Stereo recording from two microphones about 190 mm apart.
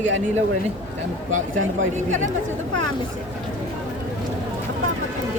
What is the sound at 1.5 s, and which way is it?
Speech, 90° right.